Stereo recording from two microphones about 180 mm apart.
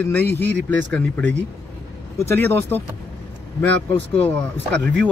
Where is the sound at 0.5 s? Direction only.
85° right.